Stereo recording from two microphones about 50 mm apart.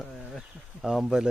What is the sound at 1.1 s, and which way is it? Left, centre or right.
Speech, centre.